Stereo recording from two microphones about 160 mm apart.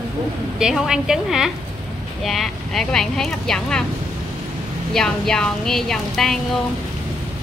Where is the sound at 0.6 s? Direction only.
5° right (ahead or behind).